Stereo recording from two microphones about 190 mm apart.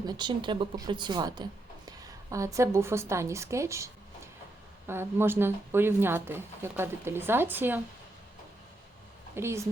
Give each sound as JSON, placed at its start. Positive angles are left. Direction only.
{"t": 0.0, "sound": "a woman's voice", "side_deg": -25}
{"t": 9.3, "sound": "speech", "side_deg": -15}